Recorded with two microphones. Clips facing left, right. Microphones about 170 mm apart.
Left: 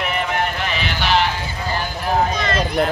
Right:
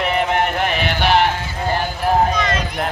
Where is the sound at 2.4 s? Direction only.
35° left (ahead or behind).